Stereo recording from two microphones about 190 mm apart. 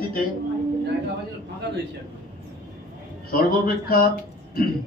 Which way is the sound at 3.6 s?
50° left (ahead or behind).